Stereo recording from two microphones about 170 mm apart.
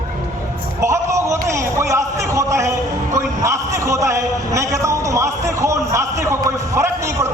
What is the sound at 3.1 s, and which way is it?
A man's voice, 15° right (ahead or behind).